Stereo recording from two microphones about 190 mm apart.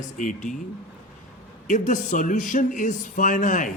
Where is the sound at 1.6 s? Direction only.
40° left (ahead or behind).